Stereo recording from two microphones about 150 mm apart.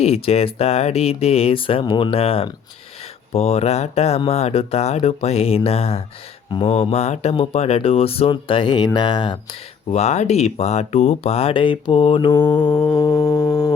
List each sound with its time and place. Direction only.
0.0 s speech: 40° left (ahead or behind)
9.9 s speech: 45° left (ahead or behind)
12.5 s music: 30° left (ahead or behind)